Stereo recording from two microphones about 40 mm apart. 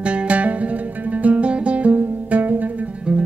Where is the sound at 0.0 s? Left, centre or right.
Right.